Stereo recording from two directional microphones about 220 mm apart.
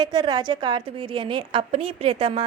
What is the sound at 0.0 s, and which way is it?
A woman's voice, 20° right (ahead or behind).